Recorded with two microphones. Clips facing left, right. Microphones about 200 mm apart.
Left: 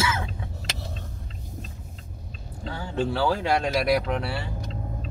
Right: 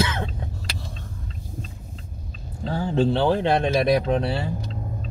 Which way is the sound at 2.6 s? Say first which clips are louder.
Right 6 dB; 40° right (ahead or behind).